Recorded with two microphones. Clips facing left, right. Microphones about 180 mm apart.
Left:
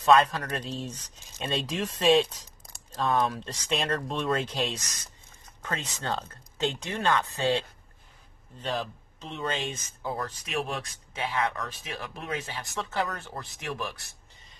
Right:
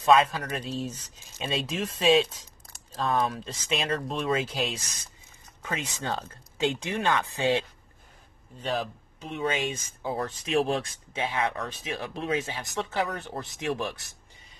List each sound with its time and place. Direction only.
0.0 s speech: centre (ahead or behind)
10.1 s speech: 30° right (ahead or behind)